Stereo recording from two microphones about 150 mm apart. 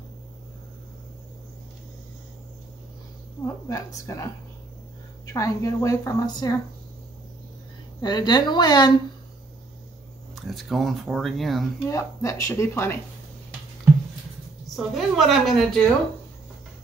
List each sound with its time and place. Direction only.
3.6 s a woman's voice: 20° left (ahead or behind)
8.0 s a woman's voice: 30° left (ahead or behind)
10.3 s speech: centre (ahead or behind)
11.9 s a woman's voice: 20° left (ahead or behind)
14.8 s speech: centre (ahead or behind)